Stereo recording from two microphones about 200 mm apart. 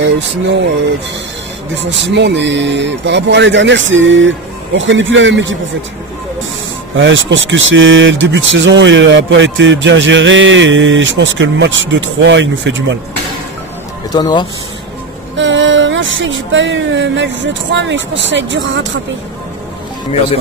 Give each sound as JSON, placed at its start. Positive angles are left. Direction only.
{"t": 1.8, "sound": "speech", "side_deg": -60}
{"t": 7.0, "sound": "speech", "side_deg": -65}
{"t": 14.1, "sound": "speech", "side_deg": 20}
{"t": 15.3, "sound": "speech", "side_deg": -70}